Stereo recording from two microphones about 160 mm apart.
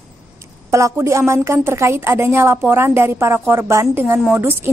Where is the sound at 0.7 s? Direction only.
20° right (ahead or behind).